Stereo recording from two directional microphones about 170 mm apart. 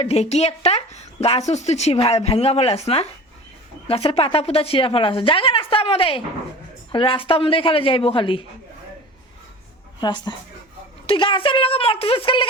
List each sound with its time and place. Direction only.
0.0 s speech: 35° left (ahead or behind)
10.0 s a woman's voice: 25° left (ahead or behind)